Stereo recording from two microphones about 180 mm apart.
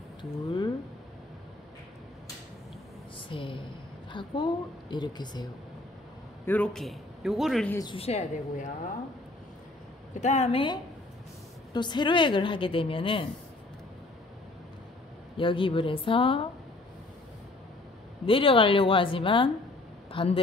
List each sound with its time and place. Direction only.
0.2 s speech: 25° left (ahead or behind)
3.3 s a woman's voice: 30° left (ahead or behind)
6.4 s a man's voice: 10° left (ahead or behind)
7.7 s a woman's voice: 25° left (ahead or behind); by 8.7 s 40° left (ahead or behind)
10.2 s a woman's voice: 40° left (ahead or behind)
15.3 s a woman's voice: 30° left (ahead or behind)
18.2 s a woman's voice: 30° left (ahead or behind)
20.1 s a sound: 30° left (ahead or behind)